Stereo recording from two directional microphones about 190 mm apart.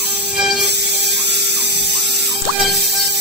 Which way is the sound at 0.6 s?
65° right (ahead or behind).